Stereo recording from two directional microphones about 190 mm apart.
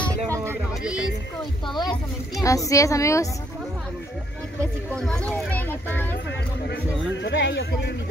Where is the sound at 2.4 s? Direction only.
15° left (ahead or behind).